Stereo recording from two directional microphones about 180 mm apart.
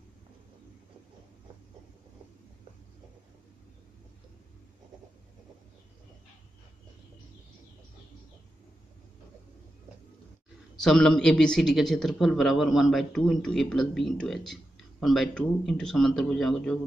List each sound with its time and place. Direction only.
10.8 s a man's voice: 5° left (ahead or behind)